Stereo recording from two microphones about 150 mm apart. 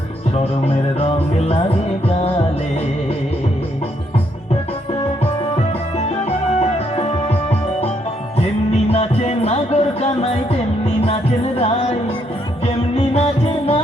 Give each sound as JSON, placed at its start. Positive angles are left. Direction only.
{"t": 0.9, "sound": "music", "side_deg": 40}
{"t": 5.2, "sound": "music", "side_deg": 45}
{"t": 8.9, "sound": "music", "side_deg": 45}